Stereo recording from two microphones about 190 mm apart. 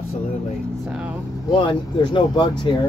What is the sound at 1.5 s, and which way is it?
Speech, 25° left (ahead or behind).